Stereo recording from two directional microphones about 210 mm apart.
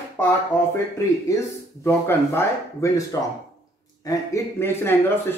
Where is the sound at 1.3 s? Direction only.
15° left (ahead or behind).